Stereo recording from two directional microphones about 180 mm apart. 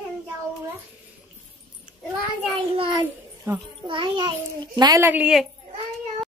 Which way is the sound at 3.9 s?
25° right (ahead or behind).